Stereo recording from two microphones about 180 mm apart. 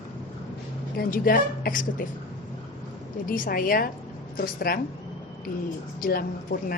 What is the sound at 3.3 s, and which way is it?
A woman's voice, 50° left (ahead or behind).